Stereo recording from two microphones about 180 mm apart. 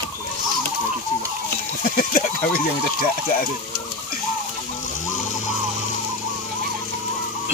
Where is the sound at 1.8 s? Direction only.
50° left (ahead or behind).